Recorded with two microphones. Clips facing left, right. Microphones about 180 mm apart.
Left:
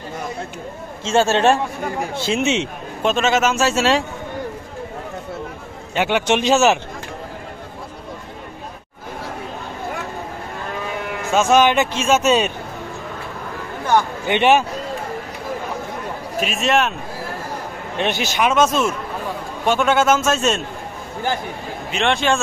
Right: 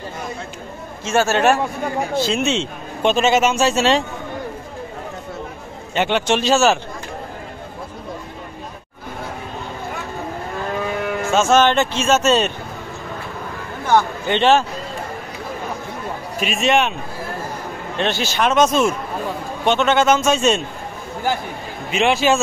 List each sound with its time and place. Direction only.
1.0 s a man's voice: 25° left (ahead or behind)
3.0 s a man's voice: centre (ahead or behind)
5.9 s speech: 10° left (ahead or behind)
11.3 s speech: 10° left (ahead or behind)
13.8 s a man's voice: 15° left (ahead or behind)
16.3 s a man's voice: centre (ahead or behind)
17.9 s speech: 15° left (ahead or behind)
18.5 s a man's voice: 5° left (ahead or behind)
21.9 s a man's voice: 5° right (ahead or behind)